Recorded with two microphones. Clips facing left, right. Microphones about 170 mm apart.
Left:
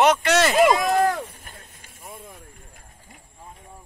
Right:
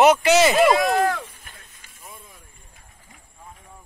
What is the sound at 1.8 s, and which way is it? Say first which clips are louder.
Vehicle: left 4 dB; 55° left (ahead or behind).